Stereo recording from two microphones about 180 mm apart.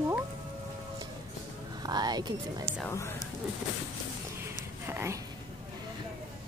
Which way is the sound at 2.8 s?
15° left (ahead or behind).